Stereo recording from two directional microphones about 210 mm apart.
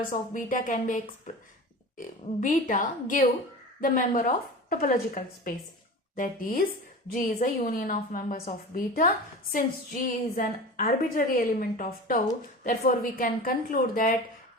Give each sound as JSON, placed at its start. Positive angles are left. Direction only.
{"t": 0.0, "sound": "a woman's voice", "side_deg": 40}